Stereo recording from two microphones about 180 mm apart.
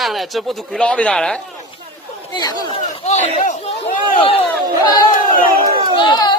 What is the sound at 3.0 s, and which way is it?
Speech, 40° left (ahead or behind).